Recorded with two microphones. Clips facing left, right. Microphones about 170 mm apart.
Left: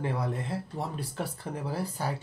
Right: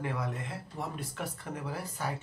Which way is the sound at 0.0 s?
35° left (ahead or behind).